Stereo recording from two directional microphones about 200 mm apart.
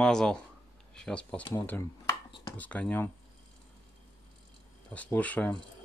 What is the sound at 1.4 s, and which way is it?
Speech, 20° left (ahead or behind).